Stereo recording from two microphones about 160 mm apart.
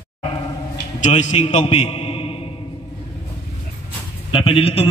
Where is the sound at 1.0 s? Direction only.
45° left (ahead or behind).